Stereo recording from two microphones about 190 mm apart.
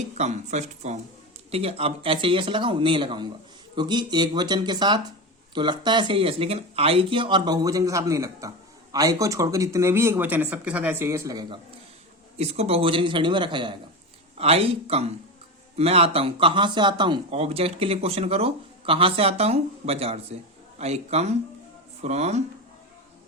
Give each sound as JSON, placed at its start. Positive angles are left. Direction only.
{"t": 0.2, "sound": "speech", "side_deg": -40}
{"t": 12.4, "sound": "speech", "side_deg": -35}